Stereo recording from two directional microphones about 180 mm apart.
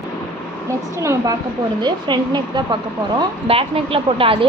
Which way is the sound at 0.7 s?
15° right (ahead or behind).